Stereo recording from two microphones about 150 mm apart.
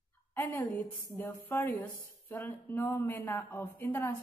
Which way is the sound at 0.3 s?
15° left (ahead or behind).